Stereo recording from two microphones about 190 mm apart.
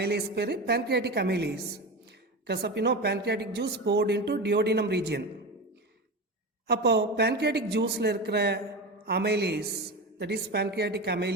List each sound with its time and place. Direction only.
0.0 s a woman's voice: 60° right (ahead or behind)
6.7 s a woman's voice: 60° right (ahead or behind)